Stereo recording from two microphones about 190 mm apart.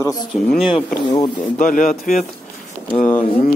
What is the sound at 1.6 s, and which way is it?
Speech, 45° left (ahead or behind).